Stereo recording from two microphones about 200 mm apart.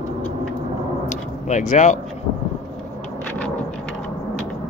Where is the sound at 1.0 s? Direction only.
35° left (ahead or behind).